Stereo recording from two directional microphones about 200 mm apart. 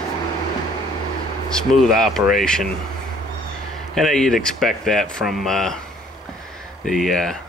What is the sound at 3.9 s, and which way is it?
Speech, centre (ahead or behind).